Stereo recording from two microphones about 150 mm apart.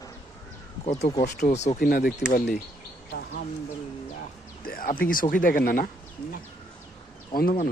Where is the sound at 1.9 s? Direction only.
70° left (ahead or behind).